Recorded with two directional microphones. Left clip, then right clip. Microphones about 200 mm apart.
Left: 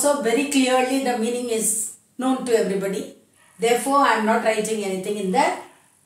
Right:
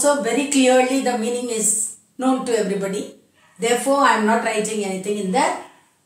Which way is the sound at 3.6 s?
10° left (ahead or behind).